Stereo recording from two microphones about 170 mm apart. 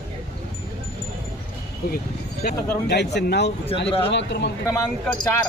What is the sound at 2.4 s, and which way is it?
Speech, 70° left (ahead or behind).